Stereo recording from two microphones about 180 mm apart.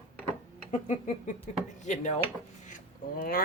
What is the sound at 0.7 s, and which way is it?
Speech, 40° left (ahead or behind).